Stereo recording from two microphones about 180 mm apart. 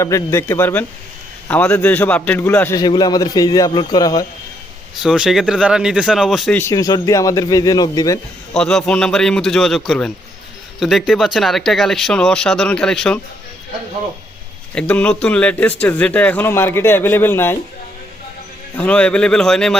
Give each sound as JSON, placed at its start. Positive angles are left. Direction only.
{"t": 0.0, "sound": "a man's voice", "side_deg": 15}
{"t": 5.0, "sound": "speech", "side_deg": -5}
{"t": 6.6, "sound": "a man's voice", "side_deg": 20}
{"t": 8.5, "sound": "speech", "side_deg": 5}
{"t": 14.8, "sound": "a man's voice", "side_deg": 5}
{"t": 18.8, "sound": "speech", "side_deg": 5}